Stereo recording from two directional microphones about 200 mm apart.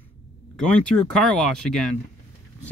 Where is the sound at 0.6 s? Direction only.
5° left (ahead or behind).